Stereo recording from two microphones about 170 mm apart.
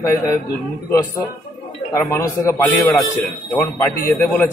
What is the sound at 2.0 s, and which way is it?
Speech, 15° left (ahead or behind).